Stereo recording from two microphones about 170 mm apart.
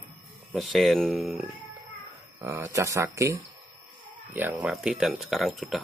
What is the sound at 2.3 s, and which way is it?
Speech, 15° right (ahead or behind).